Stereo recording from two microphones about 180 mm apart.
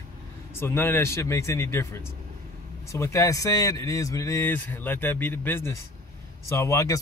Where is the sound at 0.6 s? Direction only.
15° left (ahead or behind).